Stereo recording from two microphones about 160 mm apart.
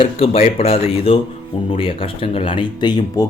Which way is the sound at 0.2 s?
40° left (ahead or behind).